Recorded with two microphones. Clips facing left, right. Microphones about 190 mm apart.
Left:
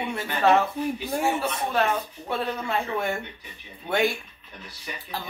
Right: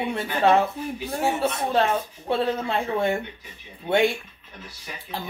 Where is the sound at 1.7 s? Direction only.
30° right (ahead or behind).